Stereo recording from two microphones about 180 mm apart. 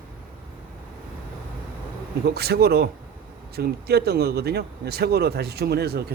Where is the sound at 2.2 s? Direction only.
60° right (ahead or behind).